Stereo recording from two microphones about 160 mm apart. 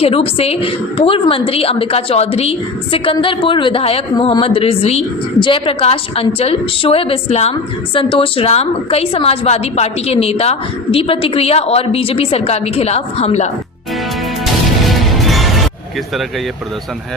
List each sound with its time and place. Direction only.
0.0 s a woman's voice: 40° left (ahead or behind)
14.4 s music: centre (ahead or behind)